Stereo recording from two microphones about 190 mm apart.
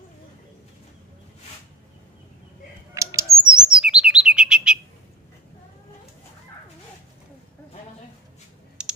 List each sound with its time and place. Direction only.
2.9 s squawk: 15° right (ahead or behind)
3.4 s chirp: 5° right (ahead or behind)
8.8 s computer keyboard: 5° right (ahead or behind)